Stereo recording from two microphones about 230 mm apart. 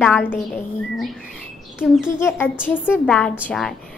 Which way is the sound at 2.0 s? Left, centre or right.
Centre.